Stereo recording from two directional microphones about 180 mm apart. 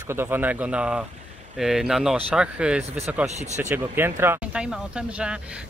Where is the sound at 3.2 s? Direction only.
40° right (ahead or behind).